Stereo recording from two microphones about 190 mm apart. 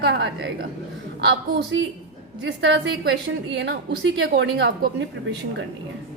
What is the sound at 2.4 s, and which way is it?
Speech, 80° right.